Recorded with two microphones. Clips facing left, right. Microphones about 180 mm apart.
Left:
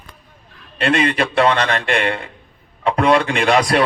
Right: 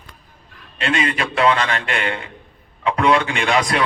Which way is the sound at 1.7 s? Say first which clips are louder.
Left 4 dB; 40° left (ahead or behind).